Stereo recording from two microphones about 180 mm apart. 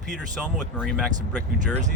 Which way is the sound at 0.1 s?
Centre (ahead or behind).